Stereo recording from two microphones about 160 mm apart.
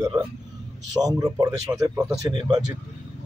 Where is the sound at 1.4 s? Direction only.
20° right (ahead or behind).